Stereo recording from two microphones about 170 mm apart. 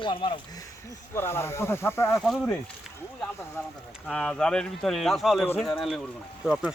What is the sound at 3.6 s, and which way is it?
Speech, 10° left (ahead or behind).